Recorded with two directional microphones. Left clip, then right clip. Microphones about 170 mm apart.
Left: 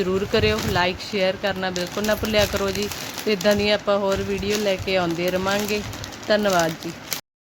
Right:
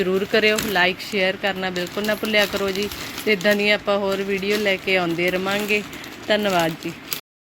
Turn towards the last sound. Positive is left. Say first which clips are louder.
# even
turn(degrees=0)  # may be behind; listen again after turning